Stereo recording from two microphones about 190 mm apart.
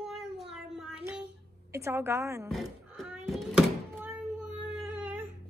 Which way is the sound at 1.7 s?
15° right (ahead or behind).